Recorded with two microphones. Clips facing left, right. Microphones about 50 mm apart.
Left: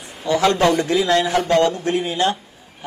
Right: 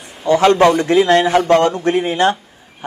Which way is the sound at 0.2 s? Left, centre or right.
Right.